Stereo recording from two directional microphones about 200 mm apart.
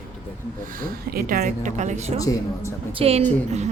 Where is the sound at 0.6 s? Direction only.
45° right (ahead or behind).